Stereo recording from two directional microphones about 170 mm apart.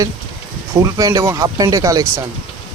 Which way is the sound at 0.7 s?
20° right (ahead or behind).